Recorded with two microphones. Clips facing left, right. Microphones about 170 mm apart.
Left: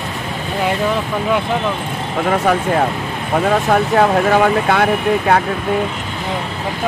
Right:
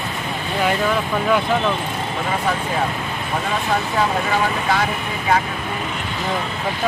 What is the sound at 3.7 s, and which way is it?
Speech, 60° left (ahead or behind).